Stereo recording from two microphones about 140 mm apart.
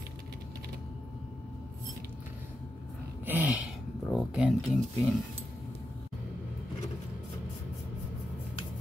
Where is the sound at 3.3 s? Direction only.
10° right (ahead or behind).